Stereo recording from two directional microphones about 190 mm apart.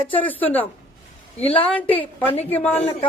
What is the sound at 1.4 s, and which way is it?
Speech, 30° left (ahead or behind).